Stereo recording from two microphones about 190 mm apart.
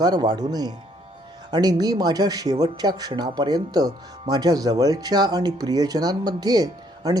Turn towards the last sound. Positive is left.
turn(degrees=-20)  # may be behind; listen again after turning